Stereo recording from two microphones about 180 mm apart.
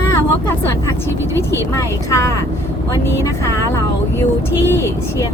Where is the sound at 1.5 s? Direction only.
15° left (ahead or behind).